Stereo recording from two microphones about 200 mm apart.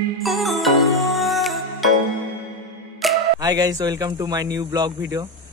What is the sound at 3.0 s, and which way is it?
Mantra, centre (ahead or behind).